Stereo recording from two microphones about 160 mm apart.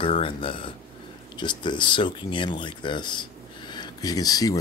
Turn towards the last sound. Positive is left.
turn(degrees=25)  # may be behind; listen again after turning